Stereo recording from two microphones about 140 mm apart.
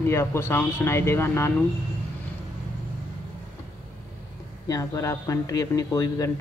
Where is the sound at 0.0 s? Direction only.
20° left (ahead or behind).